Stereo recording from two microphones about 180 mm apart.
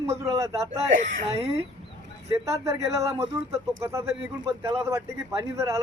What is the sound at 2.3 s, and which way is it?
Speech, 15° right (ahead or behind).